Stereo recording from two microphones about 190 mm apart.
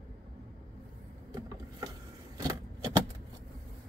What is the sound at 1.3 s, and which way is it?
Vehicle, 20° right (ahead or behind).